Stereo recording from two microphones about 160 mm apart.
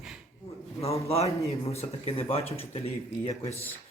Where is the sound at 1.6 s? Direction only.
40° left (ahead or behind).